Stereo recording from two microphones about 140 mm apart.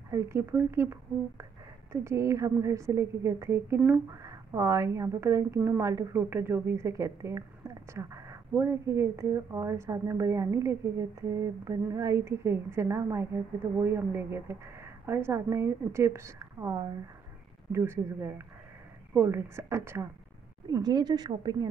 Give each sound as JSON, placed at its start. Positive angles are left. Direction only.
{"t": 0.1, "sound": "a woman's voice", "side_deg": -20}
{"t": 20.7, "sound": "a woman's voice", "side_deg": -30}